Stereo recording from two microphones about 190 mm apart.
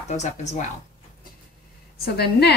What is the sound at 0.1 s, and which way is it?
Speech, 40° left (ahead or behind).